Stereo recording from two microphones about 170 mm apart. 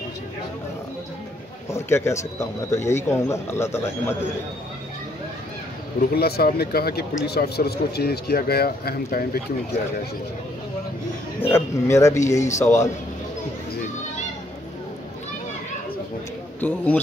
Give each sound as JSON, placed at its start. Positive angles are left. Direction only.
{"t": 1.7, "sound": "speech", "side_deg": 15}
{"t": 5.9, "sound": "speech", "side_deg": 65}
{"t": 11.4, "sound": "speech", "side_deg": 15}
{"t": 16.6, "sound": "speech", "side_deg": 10}